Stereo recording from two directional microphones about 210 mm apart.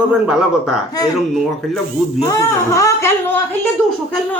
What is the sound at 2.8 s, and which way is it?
Speech, 15° left (ahead or behind).